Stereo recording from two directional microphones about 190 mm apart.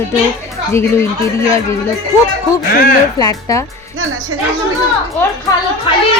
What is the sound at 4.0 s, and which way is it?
Speech, 90° right.